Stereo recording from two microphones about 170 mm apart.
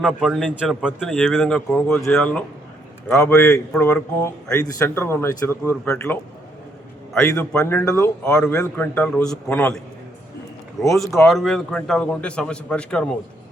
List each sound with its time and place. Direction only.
0.0 s speech: centre (ahead or behind)
3.2 s speech: 15° left (ahead or behind)
7.3 s speech: 15° left (ahead or behind)